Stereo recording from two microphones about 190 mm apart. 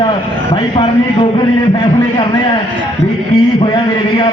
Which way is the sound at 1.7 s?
25° left (ahead or behind).